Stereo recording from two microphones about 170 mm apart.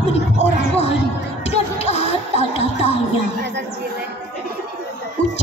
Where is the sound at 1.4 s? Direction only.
40° left (ahead or behind).